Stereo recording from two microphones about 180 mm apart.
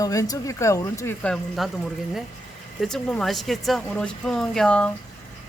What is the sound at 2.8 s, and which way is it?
Speech, centre (ahead or behind).